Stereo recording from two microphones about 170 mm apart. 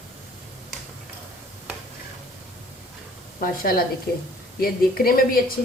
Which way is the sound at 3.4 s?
60° left (ahead or behind).